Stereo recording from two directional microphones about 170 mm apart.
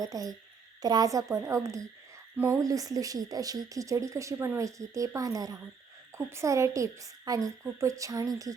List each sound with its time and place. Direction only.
0.0 s speech: 20° right (ahead or behind)